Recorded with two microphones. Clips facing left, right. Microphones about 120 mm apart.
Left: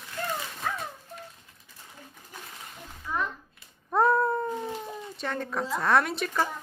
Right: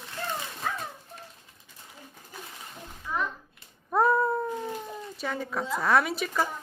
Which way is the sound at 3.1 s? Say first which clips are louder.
Even; centre (ahead or behind).